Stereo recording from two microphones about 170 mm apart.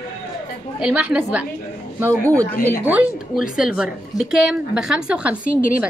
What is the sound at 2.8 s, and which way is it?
Speech, 5° right (ahead or behind).